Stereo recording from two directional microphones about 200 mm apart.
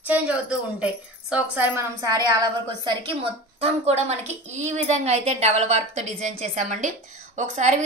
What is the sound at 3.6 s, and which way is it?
A woman's voice, 35° right (ahead or behind).